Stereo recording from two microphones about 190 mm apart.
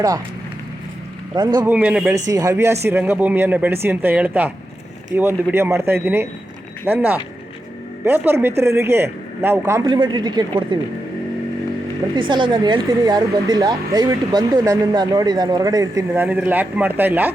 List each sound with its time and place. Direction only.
1.4 s speech: 20° right (ahead or behind)
1.7 s speech: 5° right (ahead or behind)
2.3 s speech: 15° right (ahead or behind)
12.3 s speech: 25° right (ahead or behind); by 17.3 s 10° right (ahead or behind)